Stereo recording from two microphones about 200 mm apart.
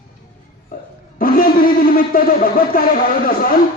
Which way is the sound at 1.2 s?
45° left (ahead or behind).